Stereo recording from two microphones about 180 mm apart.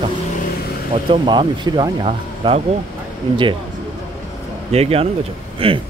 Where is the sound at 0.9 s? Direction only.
30° right (ahead or behind).